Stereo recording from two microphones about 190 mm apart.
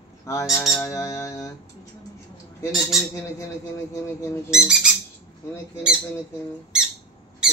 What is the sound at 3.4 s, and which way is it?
Speech, 15° left (ahead or behind).